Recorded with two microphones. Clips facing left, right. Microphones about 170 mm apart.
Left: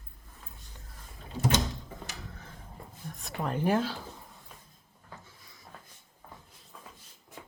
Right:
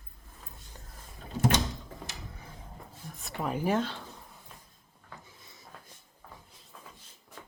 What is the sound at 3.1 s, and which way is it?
Speech, centre (ahead or behind).